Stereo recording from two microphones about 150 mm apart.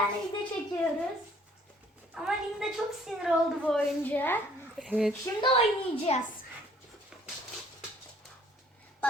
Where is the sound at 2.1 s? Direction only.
5° right (ahead or behind); by 4.8 s 15° left (ahead or behind).